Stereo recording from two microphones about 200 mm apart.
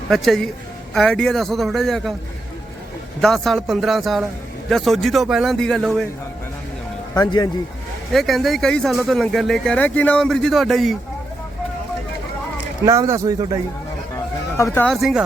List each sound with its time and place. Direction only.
0.1 s speech: centre (ahead or behind)
3.2 s speech: centre (ahead or behind)
7.3 s a man's voice: 20° left (ahead or behind)
8.1 s speech: centre (ahead or behind)
12.8 s speech: 15° right (ahead or behind)
14.5 s speech: 10° left (ahead or behind)
14.8 s speech: centre (ahead or behind)